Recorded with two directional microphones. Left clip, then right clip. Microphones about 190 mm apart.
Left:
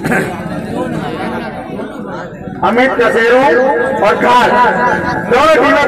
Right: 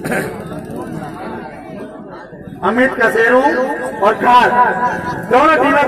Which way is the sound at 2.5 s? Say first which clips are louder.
Left 3 dB; 45° left (ahead or behind).